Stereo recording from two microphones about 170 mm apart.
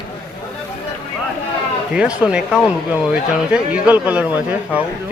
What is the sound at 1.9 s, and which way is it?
Speech, 5° right (ahead or behind).